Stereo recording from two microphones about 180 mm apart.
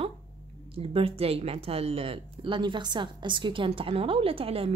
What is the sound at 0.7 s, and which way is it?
A woman's voice, 30° right (ahead or behind).